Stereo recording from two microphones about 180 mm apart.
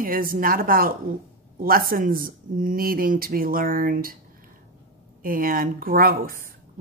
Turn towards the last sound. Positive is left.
turn(degrees=-55)  # may be behind; listen again after turning